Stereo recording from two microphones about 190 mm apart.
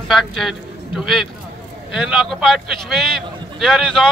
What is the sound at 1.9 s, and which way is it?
A man's voice, centre (ahead or behind).